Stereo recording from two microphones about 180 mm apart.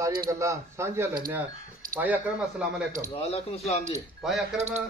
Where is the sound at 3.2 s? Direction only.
35° left (ahead or behind).